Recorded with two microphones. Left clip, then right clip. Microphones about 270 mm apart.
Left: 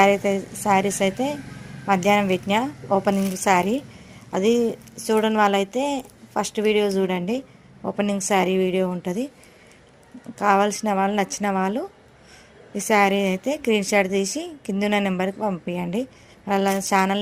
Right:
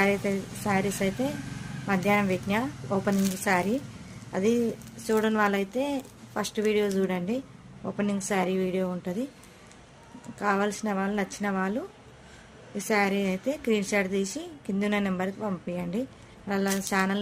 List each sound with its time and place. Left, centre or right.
0.0 s a woman's voice: left
10.3 s a woman's voice: left